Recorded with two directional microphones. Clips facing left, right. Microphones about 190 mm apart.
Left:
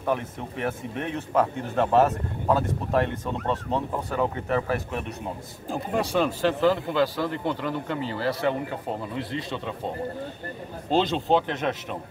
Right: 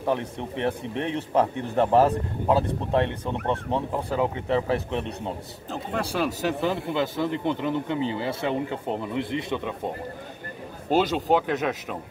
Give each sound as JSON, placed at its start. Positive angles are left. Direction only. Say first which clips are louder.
{"t": 0.0, "sound": "speech", "louder": "right 1 dB", "side_deg": -25}
{"t": 6.1, "sound": "speech", "louder": "left 3 dB", "side_deg": -5}
{"t": 6.6, "sound": "speech", "louder": "left 5 dB", "side_deg": -20}
{"t": 10.9, "sound": "speech", "louder": "right 1 dB", "side_deg": -10}